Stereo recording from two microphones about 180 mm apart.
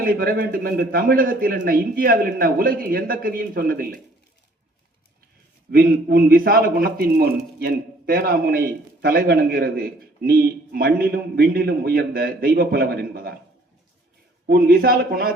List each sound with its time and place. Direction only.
0.0 s a man's voice: 55° right (ahead or behind)
5.7 s a man's voice: 55° right (ahead or behind)
14.4 s a man's voice: 60° right (ahead or behind)